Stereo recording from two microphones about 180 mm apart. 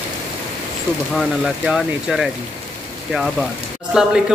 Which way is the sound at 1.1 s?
Centre (ahead or behind).